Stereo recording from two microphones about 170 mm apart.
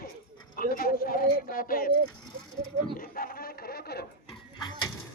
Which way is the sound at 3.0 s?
60° left (ahead or behind).